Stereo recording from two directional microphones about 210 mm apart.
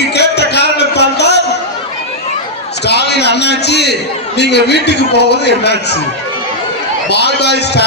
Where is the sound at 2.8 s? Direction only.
50° left (ahead or behind).